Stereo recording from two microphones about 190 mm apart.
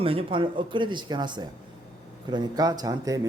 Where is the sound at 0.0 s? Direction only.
30° right (ahead or behind).